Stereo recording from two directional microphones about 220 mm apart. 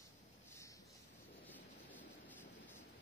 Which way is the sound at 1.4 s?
10° left (ahead or behind).